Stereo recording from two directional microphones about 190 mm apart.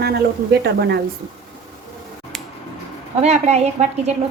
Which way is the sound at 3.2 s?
35° right (ahead or behind).